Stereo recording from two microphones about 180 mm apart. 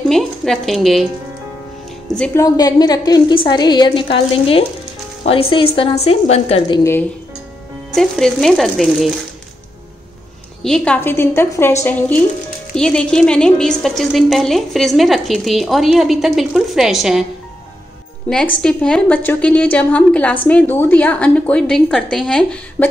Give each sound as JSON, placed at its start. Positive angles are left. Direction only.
{"t": 0.1, "sound": "a woman's voice", "side_deg": 0}
{"t": 2.0, "sound": "a woman's voice", "side_deg": 5}
{"t": 2.4, "sound": "a woman's voice", "side_deg": 20}
{"t": 6.8, "sound": "a woman's voice", "side_deg": 15}
{"t": 7.9, "sound": "a woman's voice", "side_deg": 0}
{"t": 10.6, "sound": "a woman's voice", "side_deg": 5}